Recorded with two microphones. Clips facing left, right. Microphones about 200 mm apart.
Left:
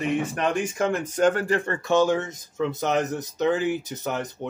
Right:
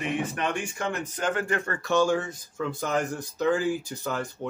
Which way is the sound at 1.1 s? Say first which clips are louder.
Left 7 dB; 40° left (ahead or behind).